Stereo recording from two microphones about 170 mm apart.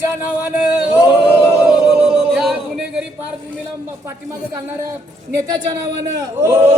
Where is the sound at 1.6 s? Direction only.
5° right (ahead or behind).